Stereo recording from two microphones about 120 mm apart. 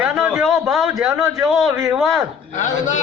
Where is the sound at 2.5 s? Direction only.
90° left.